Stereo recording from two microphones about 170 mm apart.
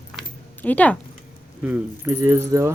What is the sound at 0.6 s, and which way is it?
Speech, 10° left (ahead or behind).